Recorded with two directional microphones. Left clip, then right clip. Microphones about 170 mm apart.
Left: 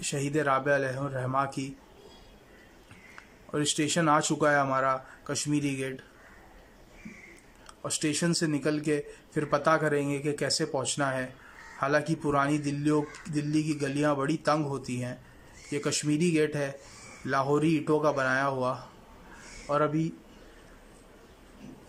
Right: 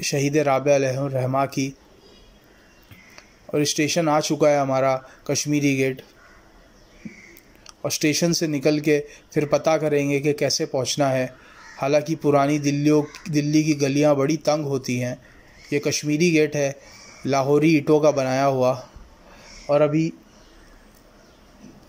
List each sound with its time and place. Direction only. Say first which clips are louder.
0.1 s speech: right 7 dB; 15° right (ahead or behind)
3.7 s speech: right 3 dB; 15° right (ahead or behind)
7.6 s speech: right 9 dB; 15° right (ahead or behind)